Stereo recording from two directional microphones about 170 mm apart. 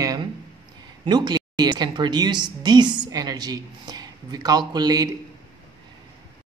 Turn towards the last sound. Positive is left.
turn(degrees=-25)  # may be behind; listen again after turning